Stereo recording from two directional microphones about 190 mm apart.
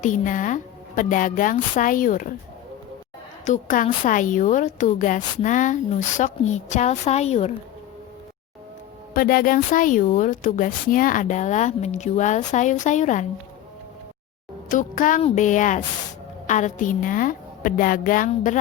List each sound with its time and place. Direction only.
0.0 s a woman's voice: 45° left (ahead or behind)
3.4 s a woman's voice: 40° left (ahead or behind)
9.1 s a woman's voice: 50° left (ahead or behind)
14.7 s a woman's voice: 45° left (ahead or behind)